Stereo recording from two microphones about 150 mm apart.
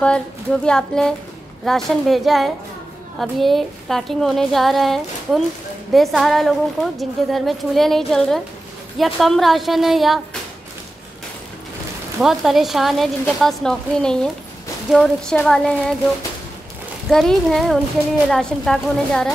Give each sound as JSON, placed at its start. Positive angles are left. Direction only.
{"t": 0.0, "sound": "a woman's voice", "side_deg": 5}
{"t": 12.2, "sound": "a woman's voice", "side_deg": 0}
{"t": 17.1, "sound": "a woman's voice", "side_deg": 0}